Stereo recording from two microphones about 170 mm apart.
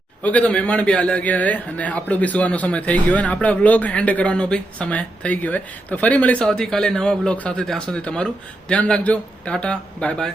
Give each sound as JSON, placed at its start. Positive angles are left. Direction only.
{"t": 0.2, "sound": "a man's voice", "side_deg": 10}